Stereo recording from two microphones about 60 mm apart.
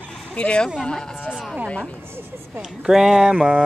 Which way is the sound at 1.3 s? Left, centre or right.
Centre.